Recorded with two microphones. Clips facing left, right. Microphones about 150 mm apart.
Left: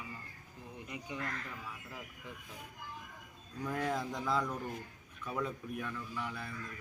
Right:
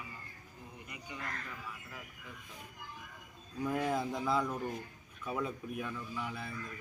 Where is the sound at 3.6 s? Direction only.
10° right (ahead or behind).